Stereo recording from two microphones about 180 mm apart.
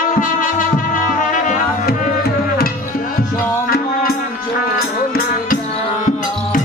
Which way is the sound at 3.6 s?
55° left (ahead or behind).